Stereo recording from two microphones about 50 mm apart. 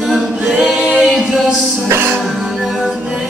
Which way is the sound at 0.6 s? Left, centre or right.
Centre.